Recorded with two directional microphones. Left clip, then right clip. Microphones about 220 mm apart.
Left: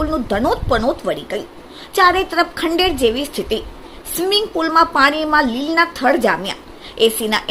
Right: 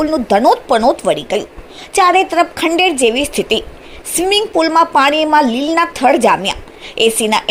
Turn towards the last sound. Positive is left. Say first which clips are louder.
# right 3 dB
turn(degrees=-15)  # may be behind; listen again after turning